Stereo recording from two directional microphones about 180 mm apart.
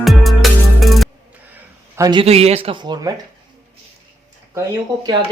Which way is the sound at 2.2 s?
35° right (ahead or behind).